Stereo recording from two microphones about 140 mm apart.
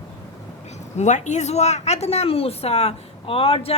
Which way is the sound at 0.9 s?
60° left (ahead or behind).